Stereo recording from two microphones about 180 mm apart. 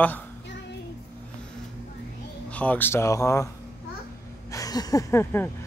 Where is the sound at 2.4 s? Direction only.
10° left (ahead or behind).